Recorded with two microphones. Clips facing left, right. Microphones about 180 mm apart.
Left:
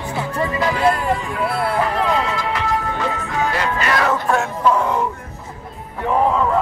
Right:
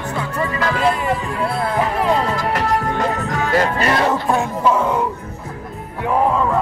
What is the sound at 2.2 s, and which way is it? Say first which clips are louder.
Music: right 2 dB; 40° right (ahead or behind).